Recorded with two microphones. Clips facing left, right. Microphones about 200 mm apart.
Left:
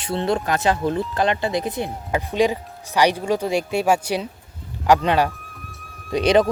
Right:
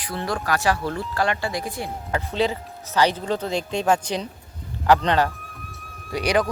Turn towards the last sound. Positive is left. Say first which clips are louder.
# left 5 dB
turn(degrees=25)  # may be behind; listen again after turning